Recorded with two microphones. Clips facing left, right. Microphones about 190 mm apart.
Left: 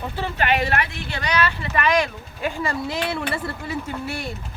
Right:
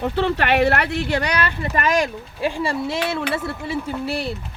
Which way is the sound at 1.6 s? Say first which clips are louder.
Right 3 dB; 45° right (ahead or behind).